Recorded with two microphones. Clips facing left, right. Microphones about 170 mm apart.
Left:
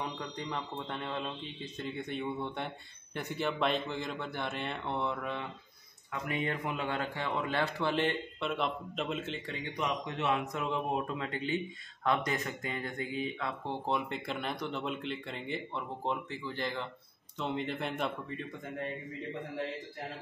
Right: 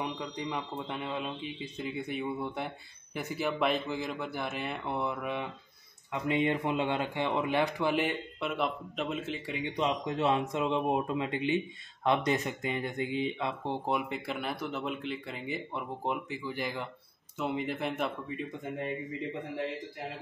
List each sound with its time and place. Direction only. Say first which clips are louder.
0.0 s speech: right 3 dB; 10° right (ahead or behind)
6.2 s speech: right 6 dB; 20° right (ahead or behind); by 9.6 s 5° right (ahead or behind)
10.0 s speech: right 4 dB; 30° right (ahead or behind)
13.8 s speech: even; 5° right (ahead or behind)